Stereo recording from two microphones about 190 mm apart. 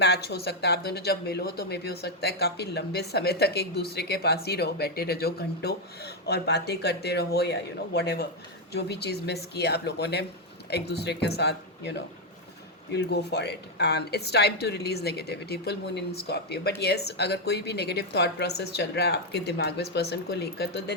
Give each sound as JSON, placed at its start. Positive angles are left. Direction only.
{"t": 0.0, "sound": "speech", "side_deg": 60}